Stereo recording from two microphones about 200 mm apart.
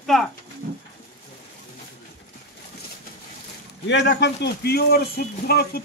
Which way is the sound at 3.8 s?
60° left (ahead or behind).